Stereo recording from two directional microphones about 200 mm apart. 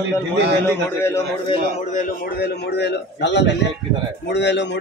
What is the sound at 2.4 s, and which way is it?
A man's voice, 55° left (ahead or behind).